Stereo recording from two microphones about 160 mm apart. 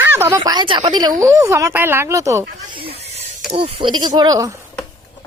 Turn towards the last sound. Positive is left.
turn(degrees=-20)  # may be behind; listen again after turning